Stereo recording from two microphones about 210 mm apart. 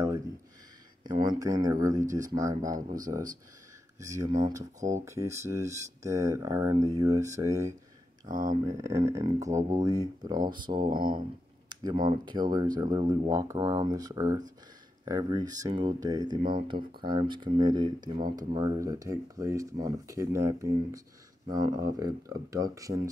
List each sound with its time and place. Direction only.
1.0 s speech: 20° right (ahead or behind)
2.0 s speech: 35° right (ahead or behind)
2.4 s speech: 15° right (ahead or behind)
4.0 s speech: 15° right (ahead or behind)
8.3 s speech: 40° right (ahead or behind)
8.6 s speech: 15° right (ahead or behind)